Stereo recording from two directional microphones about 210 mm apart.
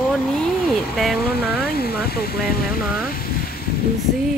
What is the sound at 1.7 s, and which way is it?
Speech, 45° left (ahead or behind).